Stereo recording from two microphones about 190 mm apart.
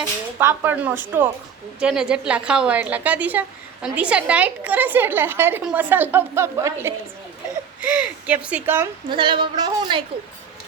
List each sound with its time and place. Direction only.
0.3 s a woman's voice: 10° right (ahead or behind)
9.0 s a woman's voice: 25° right (ahead or behind)